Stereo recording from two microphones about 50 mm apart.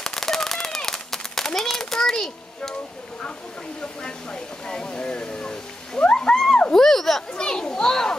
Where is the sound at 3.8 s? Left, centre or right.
Centre.